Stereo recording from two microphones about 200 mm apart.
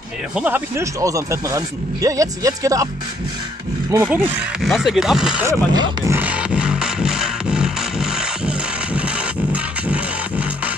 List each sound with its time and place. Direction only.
0.3 s speech: 5° right (ahead or behind)
4.0 s speech: 5° right (ahead or behind)
5.5 s music: 15° right (ahead or behind)